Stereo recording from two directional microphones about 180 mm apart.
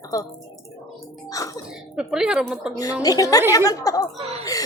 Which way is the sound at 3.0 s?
20° left (ahead or behind).